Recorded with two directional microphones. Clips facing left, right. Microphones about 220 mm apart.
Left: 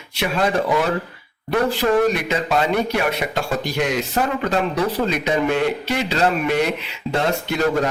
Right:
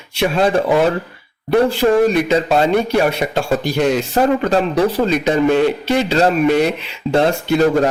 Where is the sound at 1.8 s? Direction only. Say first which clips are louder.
Right 5 dB; 30° right (ahead or behind).